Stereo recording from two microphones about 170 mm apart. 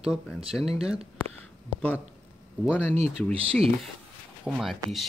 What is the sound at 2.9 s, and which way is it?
Speech, 40° right (ahead or behind).